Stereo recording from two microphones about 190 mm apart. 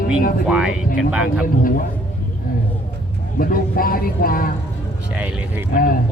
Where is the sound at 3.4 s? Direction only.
50° left (ahead or behind).